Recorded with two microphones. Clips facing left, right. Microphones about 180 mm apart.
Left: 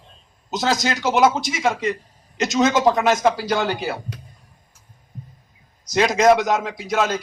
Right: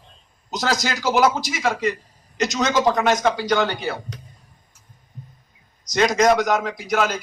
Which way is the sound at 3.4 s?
30° left (ahead or behind).